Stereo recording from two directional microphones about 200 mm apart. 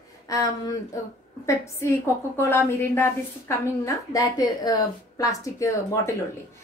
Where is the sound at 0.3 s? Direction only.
15° left (ahead or behind).